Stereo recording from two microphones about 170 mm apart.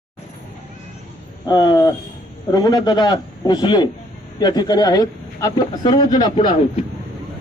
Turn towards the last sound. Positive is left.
turn(degrees=30)  # may be behind; listen again after turning